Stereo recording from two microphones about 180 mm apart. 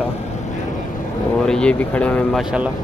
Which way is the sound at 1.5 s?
5° left (ahead or behind).